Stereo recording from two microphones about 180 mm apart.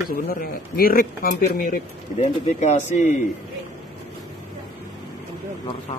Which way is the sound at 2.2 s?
40° left (ahead or behind).